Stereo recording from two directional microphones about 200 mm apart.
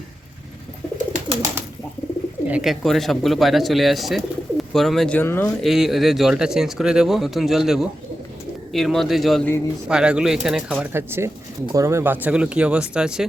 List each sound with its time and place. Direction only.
0.9 s bird: 40° right (ahead or behind)
2.5 s speech: centre (ahead or behind)
5.6 s speech: centre (ahead or behind)